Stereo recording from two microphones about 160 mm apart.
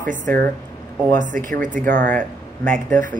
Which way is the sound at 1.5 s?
55° right (ahead or behind).